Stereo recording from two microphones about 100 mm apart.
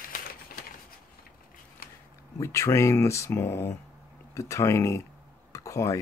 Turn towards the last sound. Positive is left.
turn(degrees=30)  # may be behind; listen again after turning